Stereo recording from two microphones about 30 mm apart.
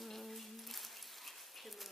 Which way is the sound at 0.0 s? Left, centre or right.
Centre.